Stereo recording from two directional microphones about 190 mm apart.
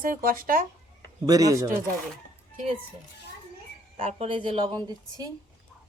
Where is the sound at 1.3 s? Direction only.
20° right (ahead or behind).